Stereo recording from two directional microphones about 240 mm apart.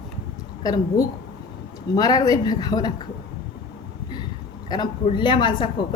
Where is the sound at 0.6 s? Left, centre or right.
Centre.